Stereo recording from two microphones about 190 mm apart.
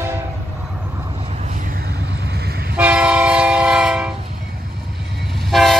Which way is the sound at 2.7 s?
5° right (ahead or behind).